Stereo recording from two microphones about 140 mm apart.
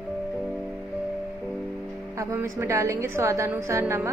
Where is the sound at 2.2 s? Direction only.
20° right (ahead or behind).